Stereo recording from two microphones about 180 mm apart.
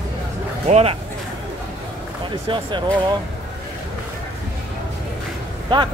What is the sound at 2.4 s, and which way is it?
Speech, 25° right (ahead or behind).